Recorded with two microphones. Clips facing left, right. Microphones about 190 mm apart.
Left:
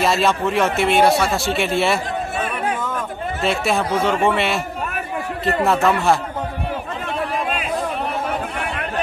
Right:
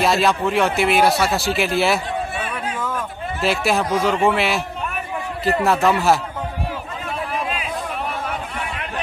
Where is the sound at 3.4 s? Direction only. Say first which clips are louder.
Right 1 dB; centre (ahead or behind).